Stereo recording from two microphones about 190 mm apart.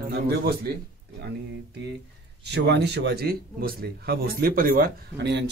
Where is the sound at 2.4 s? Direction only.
60° right (ahead or behind).